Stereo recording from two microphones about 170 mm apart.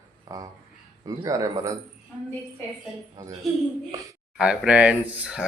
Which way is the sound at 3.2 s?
20° right (ahead or behind).